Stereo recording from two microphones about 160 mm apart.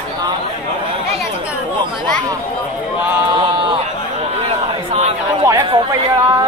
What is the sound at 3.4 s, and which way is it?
Run, 30° right (ahead or behind).